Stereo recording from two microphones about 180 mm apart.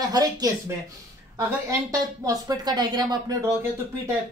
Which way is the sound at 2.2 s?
20° right (ahead or behind).